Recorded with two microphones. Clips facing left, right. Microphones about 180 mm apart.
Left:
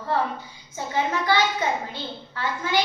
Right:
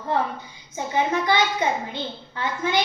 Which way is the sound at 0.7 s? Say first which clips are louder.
Right 2 dB; 20° right (ahead or behind).